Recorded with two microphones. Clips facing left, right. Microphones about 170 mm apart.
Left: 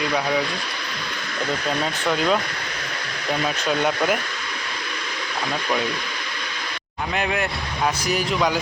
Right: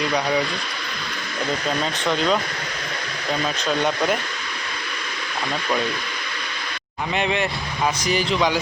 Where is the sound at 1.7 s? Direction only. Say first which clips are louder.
Even; 5° left (ahead or behind).